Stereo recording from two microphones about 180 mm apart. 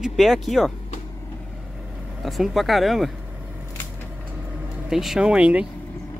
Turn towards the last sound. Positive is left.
turn(degrees=-5)  # may be behind; listen again after turning